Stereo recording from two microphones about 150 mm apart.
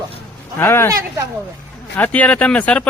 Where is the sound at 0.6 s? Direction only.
15° left (ahead or behind).